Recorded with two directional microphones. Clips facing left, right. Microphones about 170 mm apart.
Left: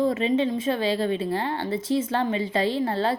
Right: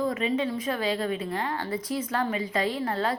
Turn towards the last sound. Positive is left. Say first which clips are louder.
# left 4 dB
turn(degrees=30)  # may be behind; listen again after turning